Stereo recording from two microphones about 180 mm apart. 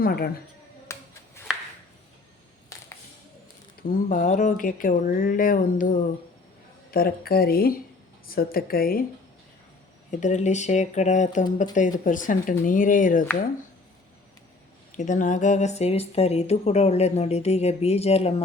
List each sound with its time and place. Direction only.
0.0 s speech: 55° left (ahead or behind)
0.9 s clapping: 15° left (ahead or behind)
3.8 s speech: 45° left (ahead or behind)
10.1 s speech: 45° left (ahead or behind)
14.9 s speech: 45° left (ahead or behind)